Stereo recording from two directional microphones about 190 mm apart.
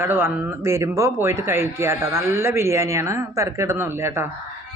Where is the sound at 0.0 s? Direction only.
10° right (ahead or behind).